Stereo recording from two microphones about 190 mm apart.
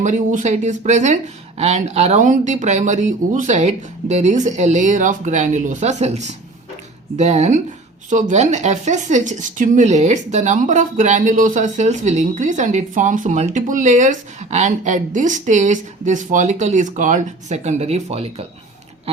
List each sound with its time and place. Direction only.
0.0 s speech: 40° right (ahead or behind)